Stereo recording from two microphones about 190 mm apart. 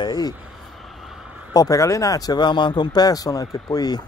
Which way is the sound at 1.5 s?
20° left (ahead or behind).